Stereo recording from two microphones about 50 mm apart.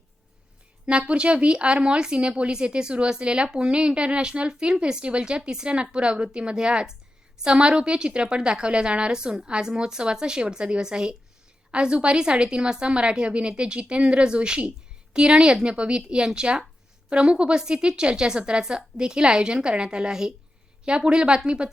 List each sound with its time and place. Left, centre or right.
0.9 s a woman's voice: right